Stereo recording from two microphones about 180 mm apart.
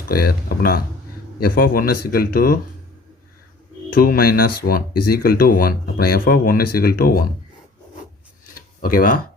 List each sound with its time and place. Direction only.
0.1 s speech: 55° left (ahead or behind)
3.9 s speech: 55° left (ahead or behind)
8.8 s speech: 50° left (ahead or behind)